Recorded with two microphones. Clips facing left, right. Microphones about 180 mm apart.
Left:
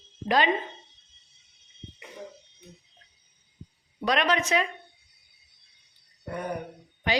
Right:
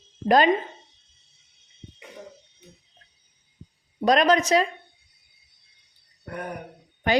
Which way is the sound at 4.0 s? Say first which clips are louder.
Right 6 dB; 40° right (ahead or behind).